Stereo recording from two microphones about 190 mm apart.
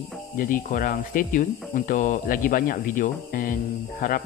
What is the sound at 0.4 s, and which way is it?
Speech, 45° left (ahead or behind).